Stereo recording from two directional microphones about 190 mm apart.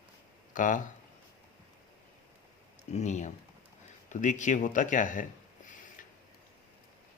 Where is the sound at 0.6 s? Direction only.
45° left (ahead or behind).